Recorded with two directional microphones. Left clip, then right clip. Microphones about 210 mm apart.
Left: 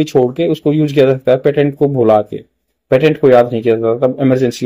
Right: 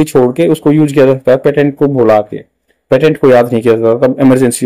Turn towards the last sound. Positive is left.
turn(degrees=-20)  # may be behind; listen again after turning